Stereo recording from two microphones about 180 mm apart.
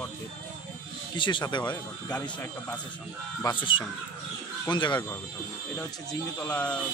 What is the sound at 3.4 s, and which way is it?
Speech, 25° left (ahead or behind).